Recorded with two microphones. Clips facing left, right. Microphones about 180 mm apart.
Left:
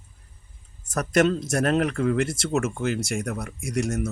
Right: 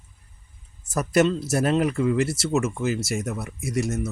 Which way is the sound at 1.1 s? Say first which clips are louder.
Right 1 dB; 5° right (ahead or behind).